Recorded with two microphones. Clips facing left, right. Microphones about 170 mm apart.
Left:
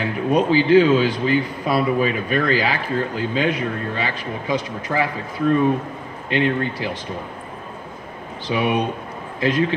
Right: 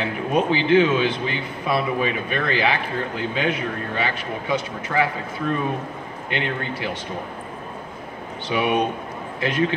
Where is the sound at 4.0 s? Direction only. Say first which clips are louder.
Even; 30° left (ahead or behind).